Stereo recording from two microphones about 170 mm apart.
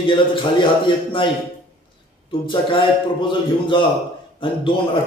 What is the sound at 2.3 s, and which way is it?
A man's voice, 30° left (ahead or behind).